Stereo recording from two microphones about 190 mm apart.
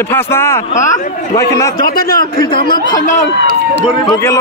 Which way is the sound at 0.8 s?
40° left (ahead or behind).